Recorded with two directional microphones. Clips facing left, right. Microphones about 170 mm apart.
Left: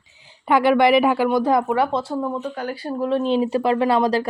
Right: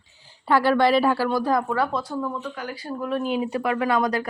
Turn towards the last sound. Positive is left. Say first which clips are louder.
# left 4 dB
turn(degrees=30)  # may be behind; listen again after turning